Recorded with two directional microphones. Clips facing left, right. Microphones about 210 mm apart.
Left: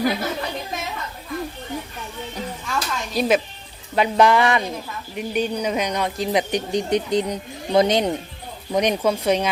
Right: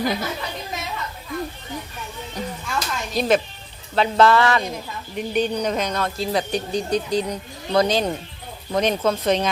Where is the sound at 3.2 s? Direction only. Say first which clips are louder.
Even; 10° left (ahead or behind).